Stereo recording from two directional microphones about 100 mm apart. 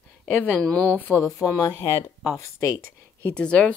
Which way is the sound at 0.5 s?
10° left (ahead or behind).